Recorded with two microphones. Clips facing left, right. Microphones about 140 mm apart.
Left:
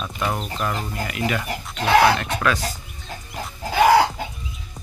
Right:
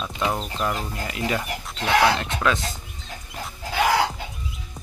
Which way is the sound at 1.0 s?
25° right (ahead or behind).